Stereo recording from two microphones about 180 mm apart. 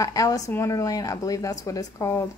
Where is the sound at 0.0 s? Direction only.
20° left (ahead or behind).